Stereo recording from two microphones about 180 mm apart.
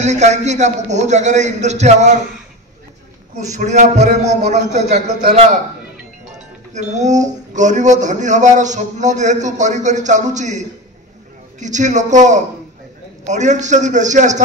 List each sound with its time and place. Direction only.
0.0 s speech: 40° right (ahead or behind)
3.3 s speech: 40° right (ahead or behind)
11.6 s speech: 40° right (ahead or behind)